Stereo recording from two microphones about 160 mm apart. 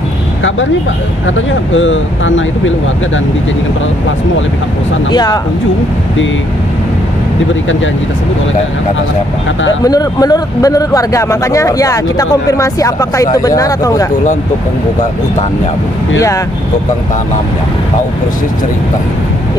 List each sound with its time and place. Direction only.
5.1 s a man's voice: 25° left (ahead or behind)
9.8 s a man's voice: 25° left (ahead or behind)